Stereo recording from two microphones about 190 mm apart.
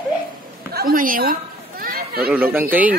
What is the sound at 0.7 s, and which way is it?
Speech, 45° right (ahead or behind).